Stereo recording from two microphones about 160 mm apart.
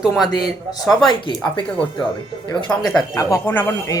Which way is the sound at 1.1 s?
30° left (ahead or behind).